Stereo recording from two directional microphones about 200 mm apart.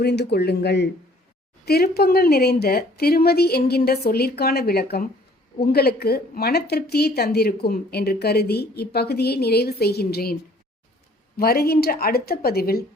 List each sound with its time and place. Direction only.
0.0 s a woman's voice: 55° left (ahead or behind)
11.3 s a woman's voice: 50° left (ahead or behind)